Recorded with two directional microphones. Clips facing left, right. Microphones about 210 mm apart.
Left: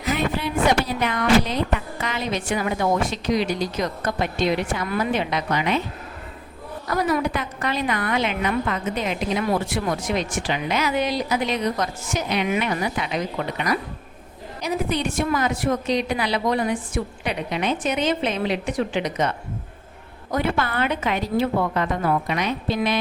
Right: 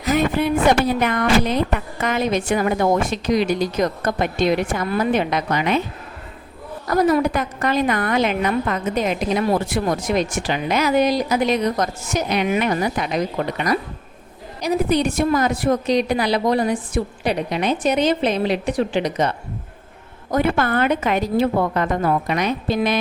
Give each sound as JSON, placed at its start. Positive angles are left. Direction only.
{"t": 0.0, "sound": "a woman's voice", "side_deg": -45}
{"t": 6.9, "sound": "a woman's voice", "side_deg": -45}
{"t": 14.6, "sound": "a woman's voice", "side_deg": -40}
{"t": 20.3, "sound": "a woman's voice", "side_deg": -50}